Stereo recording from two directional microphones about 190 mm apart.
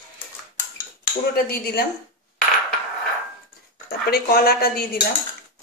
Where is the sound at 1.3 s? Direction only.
55° left (ahead or behind).